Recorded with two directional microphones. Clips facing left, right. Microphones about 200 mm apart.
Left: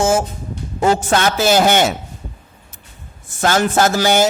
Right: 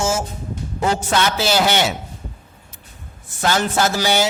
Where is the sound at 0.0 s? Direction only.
55° left (ahead or behind).